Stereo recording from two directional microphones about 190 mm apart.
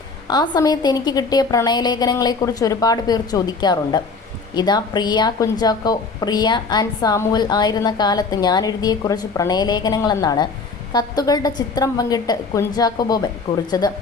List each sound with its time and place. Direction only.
0.3 s a woman's voice: 20° left (ahead or behind)